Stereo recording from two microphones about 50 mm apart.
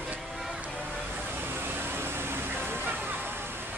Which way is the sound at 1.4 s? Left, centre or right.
Right.